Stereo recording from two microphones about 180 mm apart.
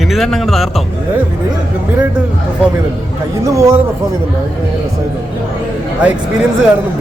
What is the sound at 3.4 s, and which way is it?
Speech, 20° right (ahead or behind).